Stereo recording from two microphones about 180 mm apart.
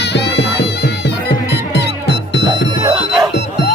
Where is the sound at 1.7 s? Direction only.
70° left (ahead or behind).